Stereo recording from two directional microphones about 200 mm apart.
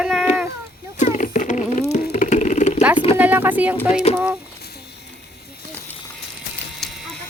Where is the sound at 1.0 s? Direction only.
40° left (ahead or behind).